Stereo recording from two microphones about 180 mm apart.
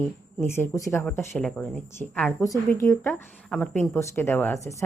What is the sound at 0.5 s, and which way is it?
Speech, 15° left (ahead or behind).